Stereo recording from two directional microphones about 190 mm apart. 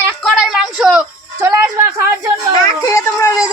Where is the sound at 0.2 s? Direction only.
Centre (ahead or behind).